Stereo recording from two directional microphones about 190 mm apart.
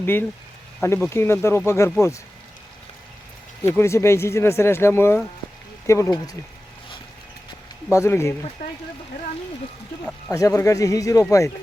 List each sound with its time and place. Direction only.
0.0 s speech: 10° left (ahead or behind)
3.8 s speech: 15° left (ahead or behind)
7.9 s speech: 15° left (ahead or behind)
10.3 s speech: 15° left (ahead or behind)